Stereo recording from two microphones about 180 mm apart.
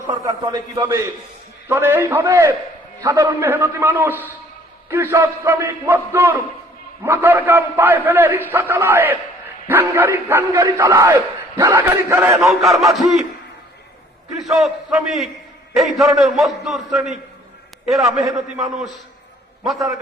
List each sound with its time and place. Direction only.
0.1 s a man's voice: 20° right (ahead or behind)
12.4 s a man's voice: centre (ahead or behind)
14.5 s a man's voice: centre (ahead or behind)